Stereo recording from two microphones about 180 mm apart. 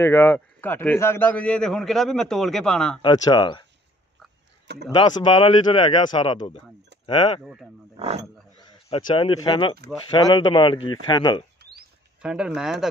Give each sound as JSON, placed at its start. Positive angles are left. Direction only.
{"t": 0.0, "sound": "a man's voice", "side_deg": 10}
{"t": 3.0, "sound": "speech", "side_deg": 25}
{"t": 4.9, "sound": "speech", "side_deg": 25}
{"t": 7.9, "sound": "speech", "side_deg": -35}
{"t": 8.8, "sound": "speech", "side_deg": 30}
{"t": 12.2, "sound": "a man's voice", "side_deg": -5}